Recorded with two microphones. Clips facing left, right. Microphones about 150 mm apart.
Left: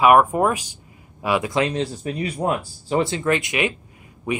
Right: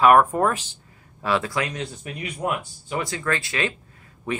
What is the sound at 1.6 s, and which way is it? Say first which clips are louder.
Speech: left 6 dB; 30° left (ahead or behind).